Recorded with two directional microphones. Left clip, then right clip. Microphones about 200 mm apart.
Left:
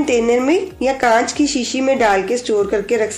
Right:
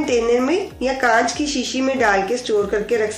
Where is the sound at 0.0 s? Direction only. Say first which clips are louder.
Left 2 dB; 40° left (ahead or behind).